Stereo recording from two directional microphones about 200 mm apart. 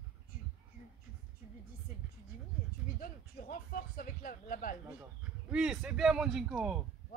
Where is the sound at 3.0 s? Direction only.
45° left (ahead or behind).